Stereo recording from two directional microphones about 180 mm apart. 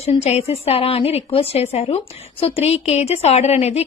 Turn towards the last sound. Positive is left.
turn(degrees=35)  # may be behind; listen again after turning